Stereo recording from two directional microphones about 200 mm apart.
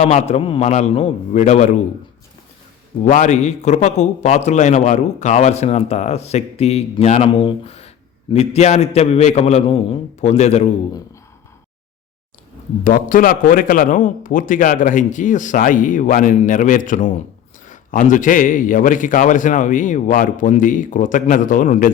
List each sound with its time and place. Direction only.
0.0 s a man's voice: 35° left (ahead or behind)
3.1 s a man's voice: 40° left (ahead or behind)
12.8 s a man's voice: 45° left (ahead or behind)